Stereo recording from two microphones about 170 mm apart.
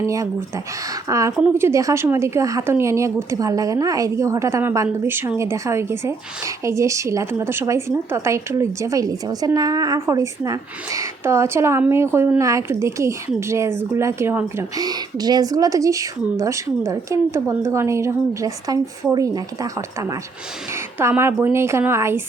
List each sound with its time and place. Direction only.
0.0 s speech: 15° right (ahead or behind)